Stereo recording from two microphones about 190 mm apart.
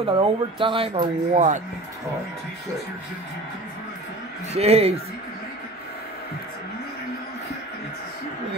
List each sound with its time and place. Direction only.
0.0 s speech: 30° right (ahead or behind)
4.6 s speech: 30° right (ahead or behind)